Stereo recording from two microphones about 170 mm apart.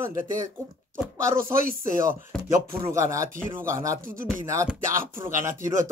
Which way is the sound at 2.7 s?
15° right (ahead or behind).